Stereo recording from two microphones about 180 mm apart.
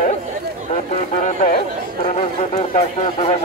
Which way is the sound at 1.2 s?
45° left (ahead or behind).